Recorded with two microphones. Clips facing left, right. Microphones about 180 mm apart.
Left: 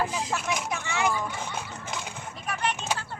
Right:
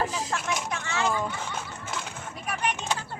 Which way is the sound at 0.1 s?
10° left (ahead or behind).